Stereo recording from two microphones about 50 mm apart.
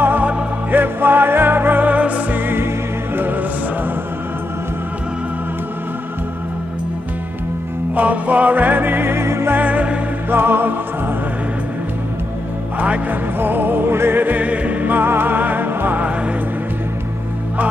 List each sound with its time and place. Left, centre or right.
0.7 s music: right
2.4 s music: right
7.9 s music: right
9.6 s music: right
10.3 s music: right
12.7 s speech: right
13.1 s music: right
14.2 s music: right